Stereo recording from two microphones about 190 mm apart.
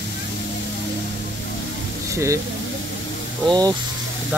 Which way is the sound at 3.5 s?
20° right (ahead or behind).